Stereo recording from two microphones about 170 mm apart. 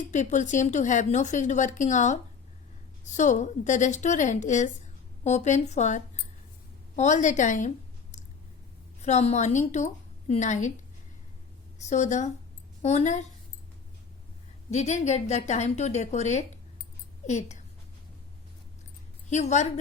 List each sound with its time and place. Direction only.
0.1 s speech: 45° left (ahead or behind)
9.0 s a woman's voice: 40° left (ahead or behind)
11.8 s a woman's voice: 45° left (ahead or behind)
14.7 s a woman's voice: 45° left (ahead or behind)
19.3 s a woman's voice: 40° left (ahead or behind)